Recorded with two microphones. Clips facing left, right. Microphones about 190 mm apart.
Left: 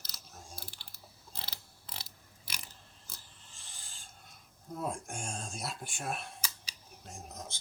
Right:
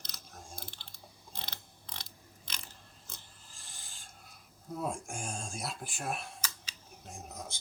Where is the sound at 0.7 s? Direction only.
20° right (ahead or behind).